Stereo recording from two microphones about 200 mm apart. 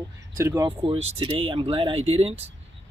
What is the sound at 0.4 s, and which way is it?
Speech, 15° right (ahead or behind).